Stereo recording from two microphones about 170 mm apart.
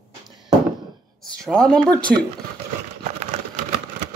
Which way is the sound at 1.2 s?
5° left (ahead or behind).